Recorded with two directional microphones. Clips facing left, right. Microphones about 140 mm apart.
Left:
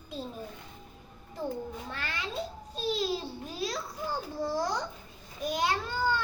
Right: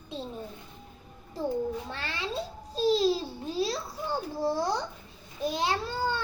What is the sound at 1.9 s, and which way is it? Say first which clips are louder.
Babbling: right 2 dB; 30° right (ahead or behind).